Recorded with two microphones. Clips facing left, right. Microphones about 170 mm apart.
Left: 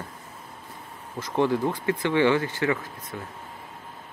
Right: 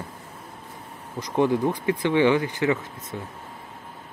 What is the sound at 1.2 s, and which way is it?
Speech, 20° right (ahead or behind).